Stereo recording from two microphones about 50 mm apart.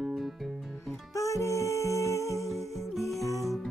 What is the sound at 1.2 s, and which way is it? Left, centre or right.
Music, left.